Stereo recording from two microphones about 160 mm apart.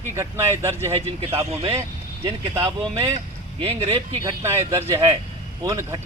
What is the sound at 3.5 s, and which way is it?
Speech, 40° right (ahead or behind).